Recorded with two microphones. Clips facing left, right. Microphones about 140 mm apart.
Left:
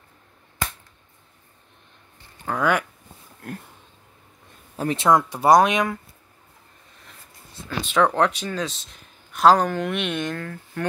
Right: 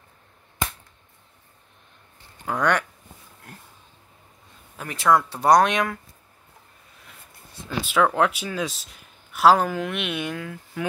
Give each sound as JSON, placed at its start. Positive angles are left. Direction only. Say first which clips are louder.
{"t": 2.4, "sound": "speech", "louder": "left 1 dB", "side_deg": 0}
{"t": 4.7, "sound": "speech", "louder": "left 2 dB", "side_deg": 25}
{"t": 5.4, "sound": "speech", "louder": "left 2 dB", "side_deg": 0}
{"t": 7.8, "sound": "speech", "louder": "left 1 dB", "side_deg": -5}